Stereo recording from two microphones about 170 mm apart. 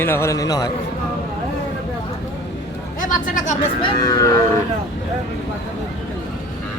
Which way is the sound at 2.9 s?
50° left (ahead or behind).